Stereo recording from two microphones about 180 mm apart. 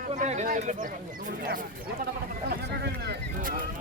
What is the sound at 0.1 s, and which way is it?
Speech, 40° right (ahead or behind).